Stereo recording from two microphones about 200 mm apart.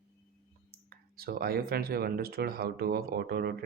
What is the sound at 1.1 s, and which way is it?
Speech, 50° right (ahead or behind).